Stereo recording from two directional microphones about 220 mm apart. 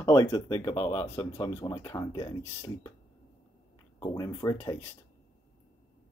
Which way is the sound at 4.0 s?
15° left (ahead or behind).